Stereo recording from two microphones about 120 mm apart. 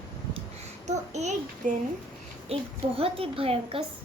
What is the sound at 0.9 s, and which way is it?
Speech, 75° right (ahead or behind).